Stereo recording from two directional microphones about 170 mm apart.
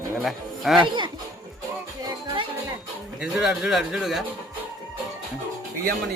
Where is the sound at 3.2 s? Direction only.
5° right (ahead or behind).